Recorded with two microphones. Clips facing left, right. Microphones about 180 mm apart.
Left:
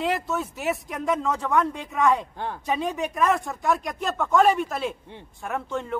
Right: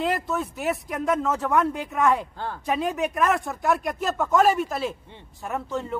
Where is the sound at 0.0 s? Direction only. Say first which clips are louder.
Even; centre (ahead or behind).